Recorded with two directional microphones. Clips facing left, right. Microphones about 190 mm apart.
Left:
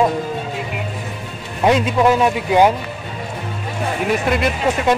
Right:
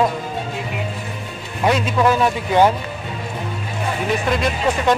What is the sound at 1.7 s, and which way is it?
Speech, 20° left (ahead or behind).